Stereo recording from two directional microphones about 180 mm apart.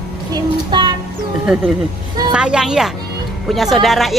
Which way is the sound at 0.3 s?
25° right (ahead or behind).